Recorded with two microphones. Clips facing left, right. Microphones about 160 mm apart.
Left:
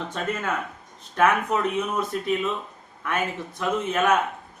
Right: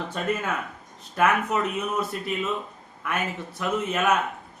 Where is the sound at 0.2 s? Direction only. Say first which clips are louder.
Even; 5° right (ahead or behind).